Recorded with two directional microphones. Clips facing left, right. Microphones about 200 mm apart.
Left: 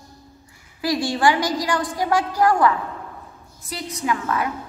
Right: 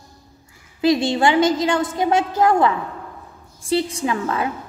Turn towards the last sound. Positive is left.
turn(degrees=-25)  # may be behind; listen again after turning